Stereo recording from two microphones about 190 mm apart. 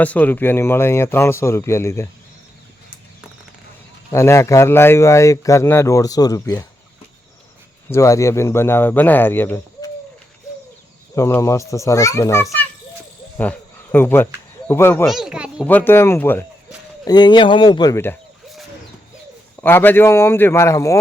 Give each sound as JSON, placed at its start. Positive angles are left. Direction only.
{"t": 0.0, "sound": "a man's voice", "side_deg": 10}
{"t": 4.1, "sound": "a man's voice", "side_deg": 15}
{"t": 7.9, "sound": "a man's voice", "side_deg": 15}
{"t": 11.1, "sound": "a man's voice", "side_deg": 15}
{"t": 15.0, "sound": "speech", "side_deg": 0}
{"t": 15.6, "sound": "a man's voice", "side_deg": 10}
{"t": 17.1, "sound": "speech", "side_deg": 20}
{"t": 19.6, "sound": "a man's voice", "side_deg": 10}